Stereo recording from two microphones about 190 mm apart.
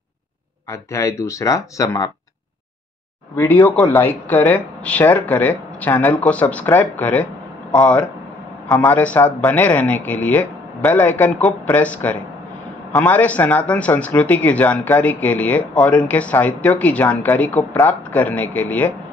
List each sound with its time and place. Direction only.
0.7 s speech: 15° left (ahead or behind)
3.3 s speech: 10° left (ahead or behind)